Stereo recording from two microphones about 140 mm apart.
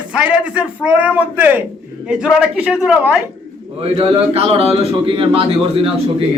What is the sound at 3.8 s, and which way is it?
A man's voice, 45° right (ahead or behind).